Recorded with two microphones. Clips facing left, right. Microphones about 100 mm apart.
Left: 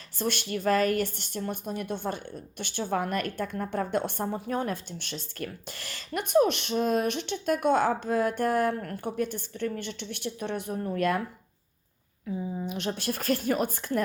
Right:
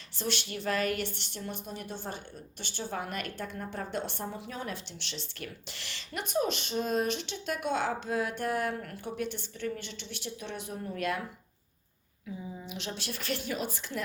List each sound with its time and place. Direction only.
0.2 s a woman's voice: 50° left (ahead or behind)
12.5 s a woman's voice: 50° left (ahead or behind)